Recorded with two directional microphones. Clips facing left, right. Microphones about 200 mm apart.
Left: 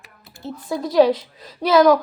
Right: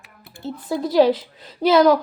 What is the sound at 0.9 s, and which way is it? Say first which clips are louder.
Speech: left 1 dB; 30° right (ahead or behind).